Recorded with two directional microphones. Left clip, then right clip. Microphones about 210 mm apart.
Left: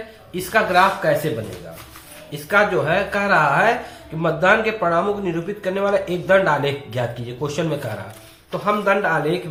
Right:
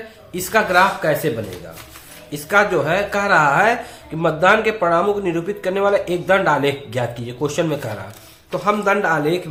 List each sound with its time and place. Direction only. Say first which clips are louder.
0.3 s speech: right 1 dB; 50° right (ahead or behind)
2.3 s speech: right 1 dB; 50° right (ahead or behind)